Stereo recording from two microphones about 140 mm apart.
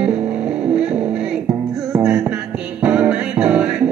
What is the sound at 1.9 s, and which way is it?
Music, 20° right (ahead or behind).